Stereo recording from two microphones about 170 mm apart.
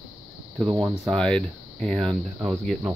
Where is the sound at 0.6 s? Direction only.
Centre (ahead or behind).